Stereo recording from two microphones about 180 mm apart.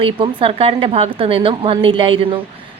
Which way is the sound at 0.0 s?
30° right (ahead or behind).